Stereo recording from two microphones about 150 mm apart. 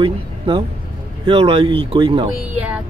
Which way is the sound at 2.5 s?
10° right (ahead or behind).